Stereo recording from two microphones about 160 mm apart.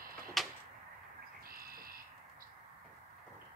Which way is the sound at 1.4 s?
70° right (ahead or behind).